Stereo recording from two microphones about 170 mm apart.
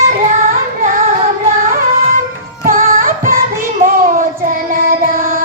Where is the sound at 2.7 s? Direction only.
55° right (ahead or behind).